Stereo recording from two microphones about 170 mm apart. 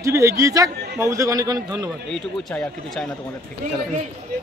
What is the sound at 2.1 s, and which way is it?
A man's voice, 5° left (ahead or behind).